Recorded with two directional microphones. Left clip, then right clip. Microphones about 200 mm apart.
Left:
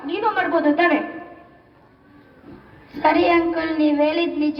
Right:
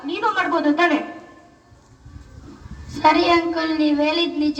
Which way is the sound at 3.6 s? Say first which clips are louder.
Left 1 dB; 15° left (ahead or behind).